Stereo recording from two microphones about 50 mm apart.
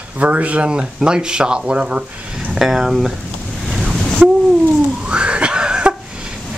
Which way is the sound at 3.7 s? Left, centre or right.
Centre.